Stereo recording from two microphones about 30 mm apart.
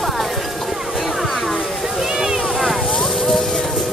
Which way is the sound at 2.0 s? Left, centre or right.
Centre.